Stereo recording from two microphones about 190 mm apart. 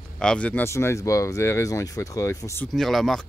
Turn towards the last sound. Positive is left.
turn(degrees=0)  # may be behind; listen again after turning